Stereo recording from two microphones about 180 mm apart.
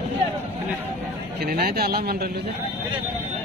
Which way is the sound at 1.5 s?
60° right (ahead or behind).